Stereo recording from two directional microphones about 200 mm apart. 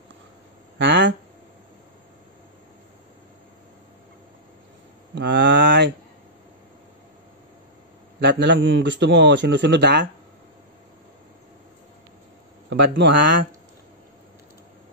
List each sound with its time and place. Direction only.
0.7 s a sound: 65° right (ahead or behind)
5.1 s speech: 60° right (ahead or behind)
8.2 s a man's voice: 60° right (ahead or behind)
12.6 s a man's voice: 60° right (ahead or behind)